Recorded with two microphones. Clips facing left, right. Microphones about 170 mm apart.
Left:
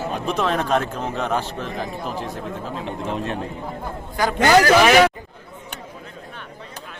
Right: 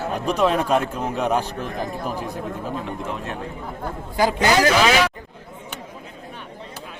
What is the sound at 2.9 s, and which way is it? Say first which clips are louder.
Speech: left 3 dB; 25° left (ahead or behind).